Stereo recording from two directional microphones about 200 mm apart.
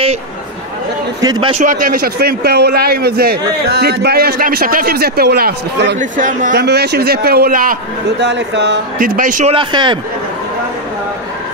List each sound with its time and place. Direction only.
1.2 s a man's voice: 20° right (ahead or behind)
1.6 s a man's voice: 40° right (ahead or behind)
5.9 s speech: 40° right (ahead or behind)
6.6 s a man's voice: 55° right (ahead or behind)
8.2 s a man's voice: 60° right (ahead or behind); by 9.6 s 40° right (ahead or behind)
9.6 s a man's voice: 25° right (ahead or behind)